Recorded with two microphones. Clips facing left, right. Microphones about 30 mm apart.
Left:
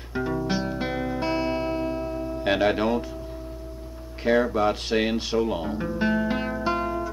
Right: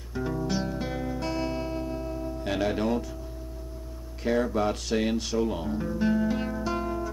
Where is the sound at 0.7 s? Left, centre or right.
Left.